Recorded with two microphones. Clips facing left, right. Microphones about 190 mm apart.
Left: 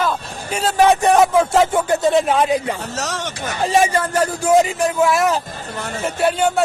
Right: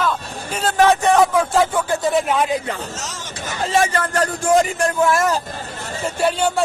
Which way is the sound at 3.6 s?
15° left (ahead or behind).